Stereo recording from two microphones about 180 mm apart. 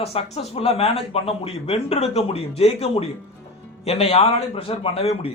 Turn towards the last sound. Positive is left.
turn(degrees=35)  # may be behind; listen again after turning